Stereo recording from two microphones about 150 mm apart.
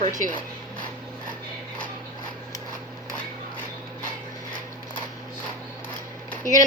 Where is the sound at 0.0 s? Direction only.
60° right (ahead or behind).